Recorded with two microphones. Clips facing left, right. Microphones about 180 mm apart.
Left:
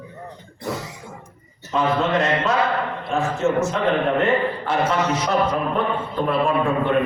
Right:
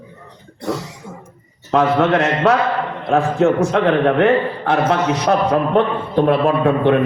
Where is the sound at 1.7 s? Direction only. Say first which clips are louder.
Right 6 dB; 75° right (ahead or behind).